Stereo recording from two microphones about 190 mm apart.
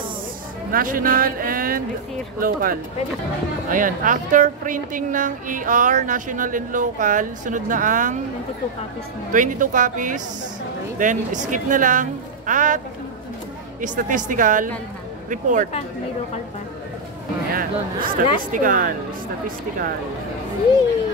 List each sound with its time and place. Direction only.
0.7 s a woman's voice: 50° right (ahead or behind)
9.3 s a woman's voice: 45° right (ahead or behind)
17.6 s a woman's voice: 50° right (ahead or behind)